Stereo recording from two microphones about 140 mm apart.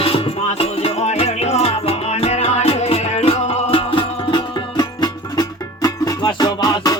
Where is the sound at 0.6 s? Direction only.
45° left (ahead or behind).